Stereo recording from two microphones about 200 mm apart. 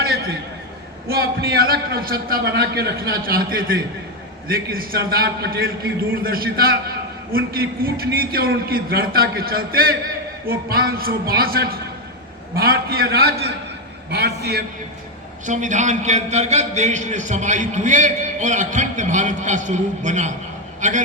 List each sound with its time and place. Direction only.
1.0 s a man's voice: 50° right (ahead or behind)
15.4 s a man's voice: 40° right (ahead or behind)